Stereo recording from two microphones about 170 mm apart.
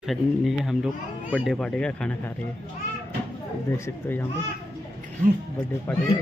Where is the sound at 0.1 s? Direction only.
Centre (ahead or behind).